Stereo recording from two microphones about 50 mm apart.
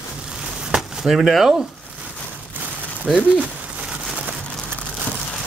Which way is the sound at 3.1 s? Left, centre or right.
Centre.